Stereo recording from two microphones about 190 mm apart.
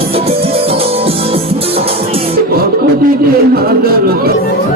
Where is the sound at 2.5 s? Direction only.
50° right (ahead or behind).